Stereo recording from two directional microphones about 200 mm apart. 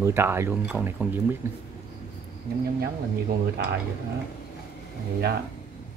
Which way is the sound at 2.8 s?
50° right (ahead or behind).